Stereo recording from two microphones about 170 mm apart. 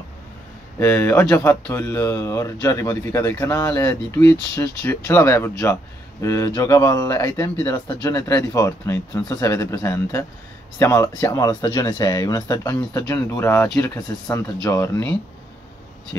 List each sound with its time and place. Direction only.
0.7 s speech: 10° left (ahead or behind)